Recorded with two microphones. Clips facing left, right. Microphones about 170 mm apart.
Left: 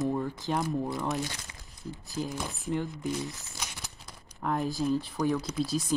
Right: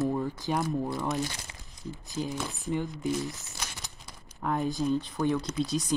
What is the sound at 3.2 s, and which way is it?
Crumpling, 20° left (ahead or behind).